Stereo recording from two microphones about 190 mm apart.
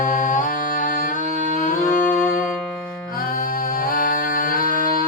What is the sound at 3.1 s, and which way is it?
Music, 50° left (ahead or behind).